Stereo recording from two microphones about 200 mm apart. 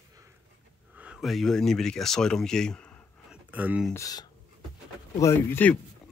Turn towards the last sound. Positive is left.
turn(degrees=10)  # may be behind; listen again after turning